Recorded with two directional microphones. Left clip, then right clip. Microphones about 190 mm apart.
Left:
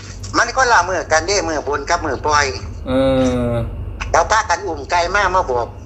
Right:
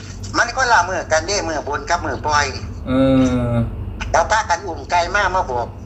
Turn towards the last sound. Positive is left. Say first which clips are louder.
# left 2 dB
turn(degrees=20)  # may be behind; listen again after turning